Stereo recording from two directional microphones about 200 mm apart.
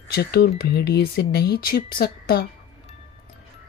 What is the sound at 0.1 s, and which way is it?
Speech, 50° left (ahead or behind).